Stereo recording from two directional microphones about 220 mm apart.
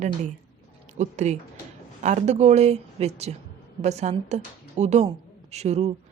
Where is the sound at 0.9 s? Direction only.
30° right (ahead or behind).